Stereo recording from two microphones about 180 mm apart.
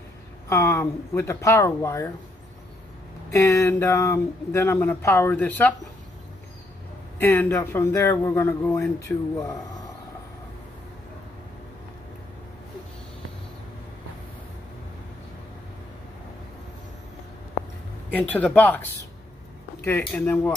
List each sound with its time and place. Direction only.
0.5 s speech: 15° left (ahead or behind)
3.3 s speech: 15° left (ahead or behind)
7.2 s speech: 10° left (ahead or behind)
18.1 s speech: 10° left (ahead or behind)